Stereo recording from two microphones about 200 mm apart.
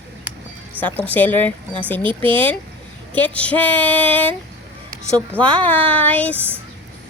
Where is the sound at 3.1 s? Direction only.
10° left (ahead or behind).